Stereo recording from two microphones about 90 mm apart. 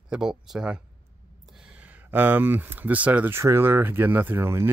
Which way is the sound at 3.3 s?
25° right (ahead or behind).